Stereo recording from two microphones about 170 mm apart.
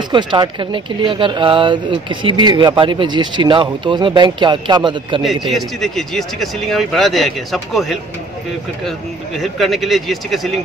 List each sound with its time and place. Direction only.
0.1 s speech: 25° right (ahead or behind)
5.2 s speech: centre (ahead or behind)
9.4 s speech: centre (ahead or behind)